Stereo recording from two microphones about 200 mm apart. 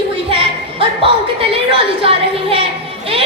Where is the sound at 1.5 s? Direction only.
25° right (ahead or behind).